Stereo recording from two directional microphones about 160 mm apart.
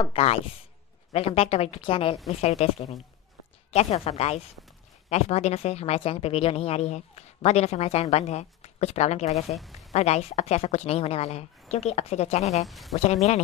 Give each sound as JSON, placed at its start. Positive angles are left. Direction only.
{"t": 0.0, "sound": "speech", "side_deg": 35}
{"t": 9.6, "sound": "a sound", "side_deg": 0}
{"t": 9.9, "sound": "speech", "side_deg": 40}
{"t": 12.6, "sound": "speech", "side_deg": 0}
{"t": 12.9, "sound": "speech", "side_deg": 40}